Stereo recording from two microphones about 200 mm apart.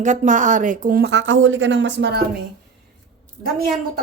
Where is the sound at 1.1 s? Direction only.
70° right (ahead or behind).